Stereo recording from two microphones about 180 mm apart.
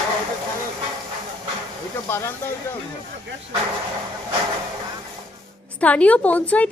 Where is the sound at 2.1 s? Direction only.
15° left (ahead or behind).